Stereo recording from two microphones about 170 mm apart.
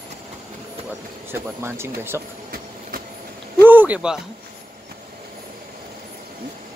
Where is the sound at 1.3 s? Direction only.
15° right (ahead or behind).